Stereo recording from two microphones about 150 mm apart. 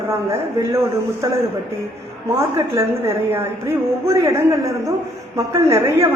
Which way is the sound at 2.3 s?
15° right (ahead or behind).